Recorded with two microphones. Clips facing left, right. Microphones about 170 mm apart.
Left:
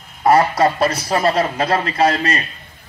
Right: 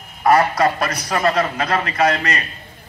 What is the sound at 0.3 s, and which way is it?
A man's voice, 25° left (ahead or behind).